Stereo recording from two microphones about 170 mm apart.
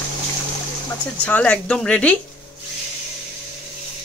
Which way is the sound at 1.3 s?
5° left (ahead or behind).